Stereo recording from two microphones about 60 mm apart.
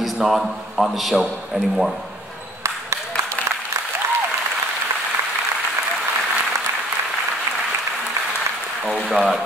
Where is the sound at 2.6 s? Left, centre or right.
Right.